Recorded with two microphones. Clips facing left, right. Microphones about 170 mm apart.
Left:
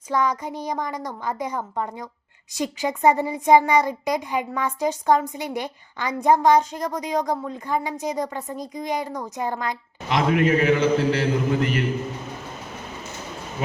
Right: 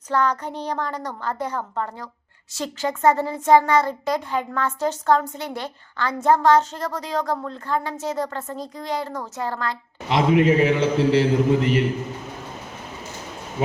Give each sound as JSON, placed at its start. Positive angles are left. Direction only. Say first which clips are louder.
{"t": 0.1, "sound": "a child's voice", "louder": "right 1 dB", "side_deg": 10}
{"t": 10.1, "sound": "a man's voice", "louder": "right 2 dB", "side_deg": -30}